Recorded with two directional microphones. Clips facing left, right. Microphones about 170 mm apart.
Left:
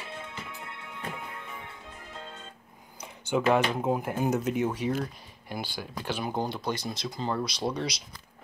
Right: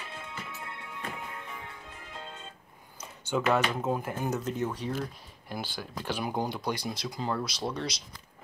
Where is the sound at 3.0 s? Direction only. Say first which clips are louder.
Left 2 dB; 10° left (ahead or behind).